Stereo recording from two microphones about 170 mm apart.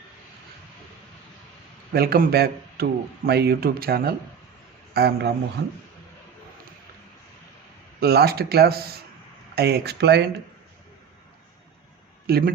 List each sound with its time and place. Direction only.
1.9 s a man's voice: 65° right (ahead or behind)
8.0 s speech: 70° right (ahead or behind)
12.2 s speech: 65° right (ahead or behind)